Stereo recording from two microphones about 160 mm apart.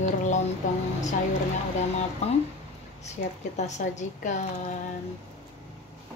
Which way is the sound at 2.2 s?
40° left (ahead or behind).